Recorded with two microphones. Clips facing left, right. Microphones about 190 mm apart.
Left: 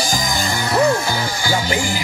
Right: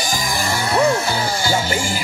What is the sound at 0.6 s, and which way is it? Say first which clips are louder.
Music: left 1 dB; 30° right (ahead or behind).